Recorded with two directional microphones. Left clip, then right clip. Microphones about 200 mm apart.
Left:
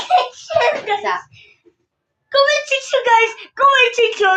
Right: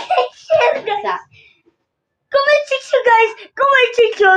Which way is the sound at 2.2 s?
30° right (ahead or behind).